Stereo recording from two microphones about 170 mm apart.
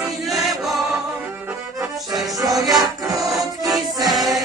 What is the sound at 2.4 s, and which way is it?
Music, 20° right (ahead or behind).